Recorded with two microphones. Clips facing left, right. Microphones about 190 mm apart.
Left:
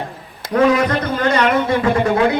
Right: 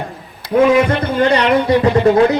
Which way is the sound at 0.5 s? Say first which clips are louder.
Right 2 dB; 10° right (ahead or behind).